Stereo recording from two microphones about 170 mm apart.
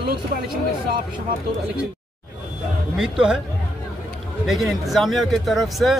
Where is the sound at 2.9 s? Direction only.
5° right (ahead or behind).